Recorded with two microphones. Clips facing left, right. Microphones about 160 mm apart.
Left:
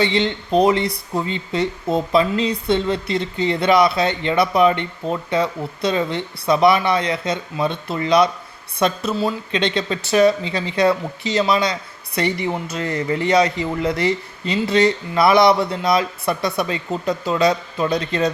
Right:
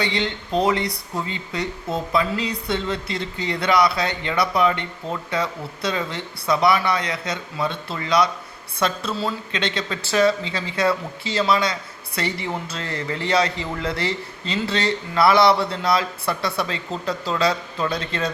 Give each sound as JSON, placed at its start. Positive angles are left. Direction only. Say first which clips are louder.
{"t": 0.0, "sound": "speech", "louder": "left 5 dB", "side_deg": 20}